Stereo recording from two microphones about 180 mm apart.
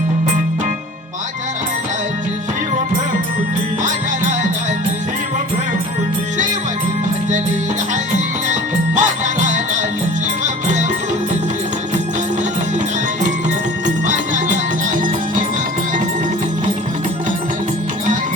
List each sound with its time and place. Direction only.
9.0 s music: 45° right (ahead or behind)
13.8 s music: 45° right (ahead or behind)